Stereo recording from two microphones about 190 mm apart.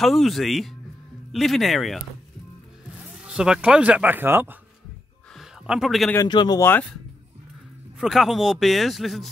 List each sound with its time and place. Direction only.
0.0 s speech: centre (ahead or behind)
3.3 s speech: 5° right (ahead or behind)
5.3 s a sound: centre (ahead or behind)
6.1 s speech: 20° left (ahead or behind)
8.0 s speech: centre (ahead or behind)